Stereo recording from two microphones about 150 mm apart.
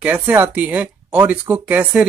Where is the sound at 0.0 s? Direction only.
10° right (ahead or behind).